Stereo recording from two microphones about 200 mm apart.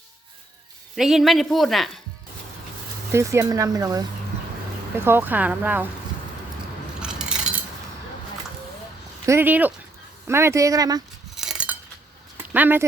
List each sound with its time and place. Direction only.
0.9 s speech: centre (ahead or behind)
3.1 s speech: 15° right (ahead or behind)
7.0 s a sound: 5° right (ahead or behind)
9.2 s speech: 10° right (ahead or behind)
11.3 s chink: 5° right (ahead or behind)
12.4 s a sound: 10° right (ahead or behind)